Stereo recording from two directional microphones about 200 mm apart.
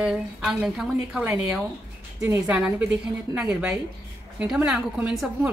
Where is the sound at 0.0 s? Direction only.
5° right (ahead or behind).